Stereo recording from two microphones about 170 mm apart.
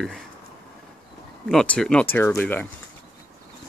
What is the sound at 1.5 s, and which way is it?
Speech, 5° left (ahead or behind).